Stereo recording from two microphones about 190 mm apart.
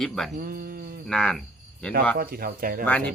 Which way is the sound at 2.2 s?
50° right (ahead or behind).